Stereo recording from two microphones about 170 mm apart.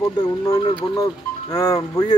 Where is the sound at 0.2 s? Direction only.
20° left (ahead or behind).